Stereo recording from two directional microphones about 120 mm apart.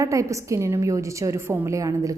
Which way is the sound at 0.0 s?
25° right (ahead or behind).